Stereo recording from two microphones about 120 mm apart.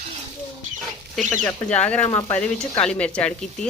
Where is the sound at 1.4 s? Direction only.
10° left (ahead or behind).